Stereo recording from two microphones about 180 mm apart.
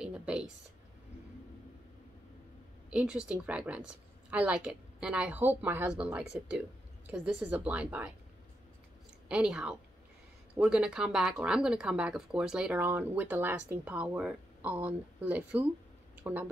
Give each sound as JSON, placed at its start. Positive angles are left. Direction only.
{"t": 0.0, "sound": "a sound", "side_deg": -5}
{"t": 2.9, "sound": "speech", "side_deg": -5}
{"t": 9.3, "sound": "a woman's voice", "side_deg": -5}